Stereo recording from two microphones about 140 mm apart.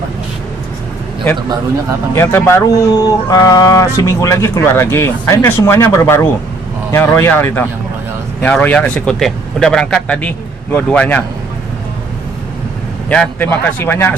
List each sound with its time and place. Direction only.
2.1 s speech: 15° left (ahead or behind)
13.1 s speech: 10° left (ahead or behind)